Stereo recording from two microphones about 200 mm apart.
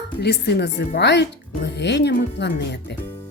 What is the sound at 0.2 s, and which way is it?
Speech, 55° left (ahead or behind).